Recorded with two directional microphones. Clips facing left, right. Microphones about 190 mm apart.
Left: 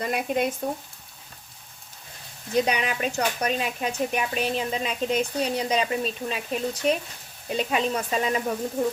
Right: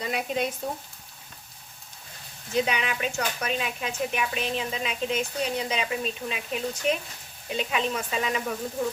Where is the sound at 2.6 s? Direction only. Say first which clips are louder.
Left 3 dB; 40° left (ahead or behind).